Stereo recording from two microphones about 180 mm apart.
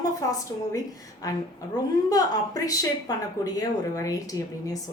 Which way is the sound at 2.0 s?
20° left (ahead or behind).